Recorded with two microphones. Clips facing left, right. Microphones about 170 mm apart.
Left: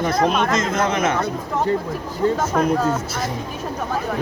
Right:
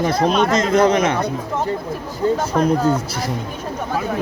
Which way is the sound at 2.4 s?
30° right (ahead or behind).